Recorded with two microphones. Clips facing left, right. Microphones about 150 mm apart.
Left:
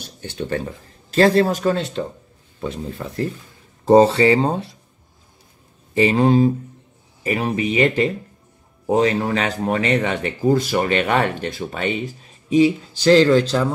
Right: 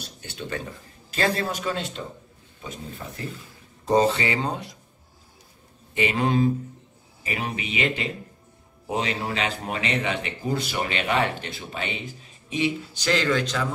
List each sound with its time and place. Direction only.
0.2 s speech: 45° left (ahead or behind)
2.6 s speech: 60° left (ahead or behind)
3.8 s speech: 35° left (ahead or behind)
5.9 s speech: 35° left (ahead or behind)